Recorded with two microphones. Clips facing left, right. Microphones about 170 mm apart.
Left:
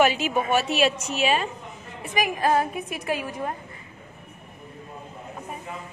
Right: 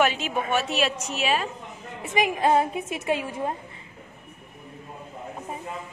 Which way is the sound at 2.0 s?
20° right (ahead or behind).